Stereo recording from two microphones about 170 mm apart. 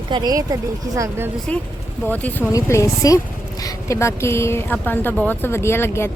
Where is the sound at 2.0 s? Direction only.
10° left (ahead or behind).